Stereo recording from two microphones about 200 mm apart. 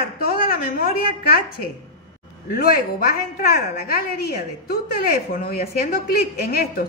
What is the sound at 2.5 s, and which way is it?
A woman's voice, 45° left (ahead or behind).